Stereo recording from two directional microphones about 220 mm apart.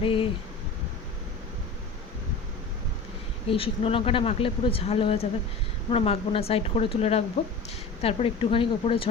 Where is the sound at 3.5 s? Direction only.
25° left (ahead or behind).